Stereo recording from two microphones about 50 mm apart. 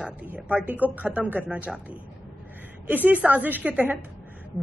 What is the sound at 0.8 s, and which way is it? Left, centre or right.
Speech, right.